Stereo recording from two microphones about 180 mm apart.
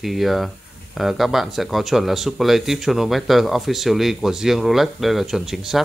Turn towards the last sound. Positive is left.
turn(degrees=0)  # may be behind; listen again after turning